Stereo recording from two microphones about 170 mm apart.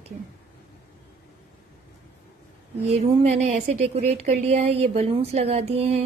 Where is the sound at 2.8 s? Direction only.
40° right (ahead or behind).